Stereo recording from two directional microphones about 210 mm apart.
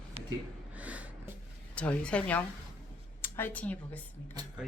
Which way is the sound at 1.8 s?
5° left (ahead or behind).